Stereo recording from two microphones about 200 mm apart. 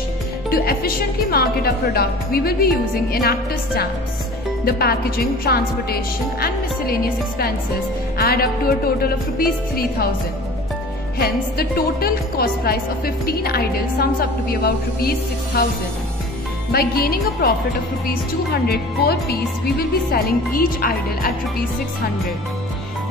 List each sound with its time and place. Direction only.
0.5 s a woman's voice: 50° left (ahead or behind)
11.1 s a woman's voice: 50° left (ahead or behind)
16.7 s a woman's voice: 50° left (ahead or behind)